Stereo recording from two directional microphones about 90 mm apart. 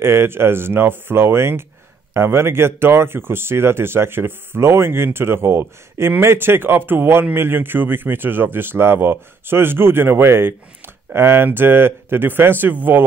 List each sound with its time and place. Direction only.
0.0 s speech: 30° right (ahead or behind)